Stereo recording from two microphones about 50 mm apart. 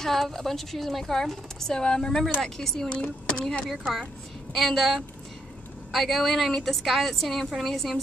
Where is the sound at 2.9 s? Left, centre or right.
Left.